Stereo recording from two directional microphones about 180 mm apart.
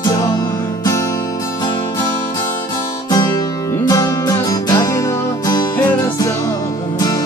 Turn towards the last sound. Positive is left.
turn(degrees=20)  # may be behind; listen again after turning